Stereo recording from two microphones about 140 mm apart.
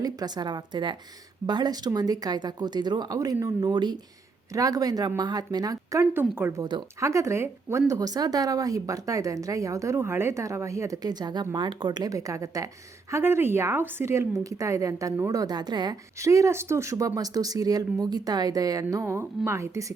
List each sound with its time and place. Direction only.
0.0 s a woman's voice: 30° right (ahead or behind)